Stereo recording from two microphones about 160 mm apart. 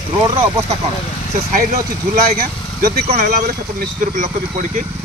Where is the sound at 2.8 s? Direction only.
60° right (ahead or behind).